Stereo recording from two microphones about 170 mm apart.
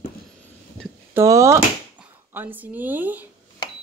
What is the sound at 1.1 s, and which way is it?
Speech, 20° right (ahead or behind).